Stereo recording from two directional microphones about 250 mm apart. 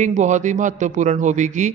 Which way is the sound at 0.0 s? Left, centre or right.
Right.